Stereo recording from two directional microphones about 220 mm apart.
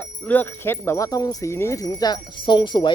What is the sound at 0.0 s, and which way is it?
Speech, 10° left (ahead or behind).